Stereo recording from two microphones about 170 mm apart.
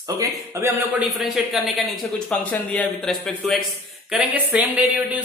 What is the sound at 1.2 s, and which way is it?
Speech, centre (ahead or behind).